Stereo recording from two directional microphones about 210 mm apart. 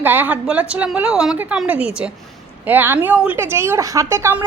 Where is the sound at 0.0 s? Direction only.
10° right (ahead or behind).